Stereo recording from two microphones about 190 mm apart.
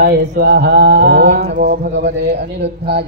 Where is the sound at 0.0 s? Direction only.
55° right (ahead or behind).